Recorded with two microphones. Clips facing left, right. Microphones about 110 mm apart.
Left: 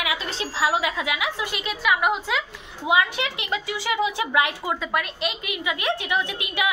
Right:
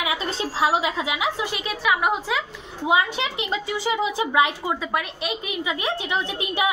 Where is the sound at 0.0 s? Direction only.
35° right (ahead or behind).